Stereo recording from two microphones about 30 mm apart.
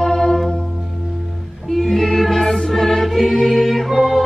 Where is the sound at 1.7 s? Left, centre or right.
Centre.